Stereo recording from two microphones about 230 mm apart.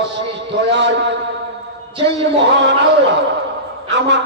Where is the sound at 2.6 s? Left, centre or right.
Right.